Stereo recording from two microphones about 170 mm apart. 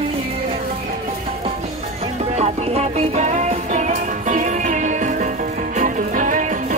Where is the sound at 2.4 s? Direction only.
40° right (ahead or behind).